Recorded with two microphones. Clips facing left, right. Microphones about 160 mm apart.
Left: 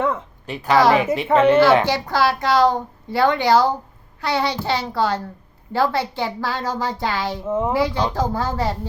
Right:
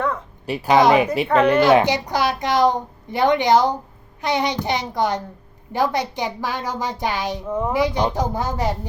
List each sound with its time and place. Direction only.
0.4 s a child's voice: 10° right (ahead or behind)
7.4 s speech: 20° left (ahead or behind)
7.7 s a child's voice: 15° right (ahead or behind)